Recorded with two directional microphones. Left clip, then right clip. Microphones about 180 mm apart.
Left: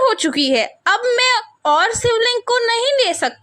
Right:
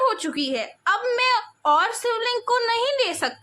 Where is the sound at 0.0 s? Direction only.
35° left (ahead or behind).